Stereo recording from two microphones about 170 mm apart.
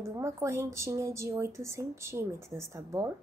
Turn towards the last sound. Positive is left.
turn(degrees=-15)  # may be behind; listen again after turning